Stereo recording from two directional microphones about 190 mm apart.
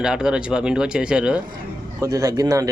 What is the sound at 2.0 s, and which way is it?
Speech, 20° right (ahead or behind).